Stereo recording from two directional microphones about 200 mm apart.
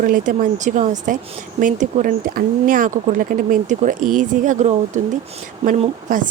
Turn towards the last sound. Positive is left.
turn(degrees=-35)  # may be behind; listen again after turning